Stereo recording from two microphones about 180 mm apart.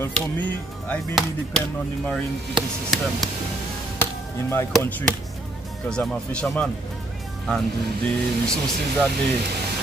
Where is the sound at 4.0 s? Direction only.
10° left (ahead or behind).